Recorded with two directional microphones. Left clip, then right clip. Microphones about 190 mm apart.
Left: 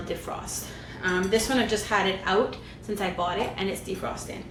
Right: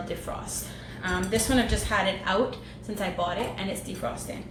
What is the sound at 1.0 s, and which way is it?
A woman's voice, 15° left (ahead or behind).